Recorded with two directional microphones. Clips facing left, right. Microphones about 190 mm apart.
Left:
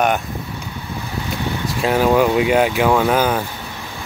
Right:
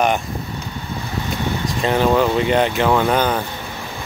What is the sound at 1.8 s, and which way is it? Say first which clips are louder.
Speech: left 1 dB; 5° left (ahead or behind).